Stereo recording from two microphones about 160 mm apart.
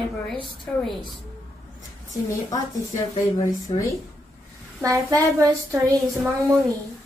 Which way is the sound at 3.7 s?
35° left (ahead or behind).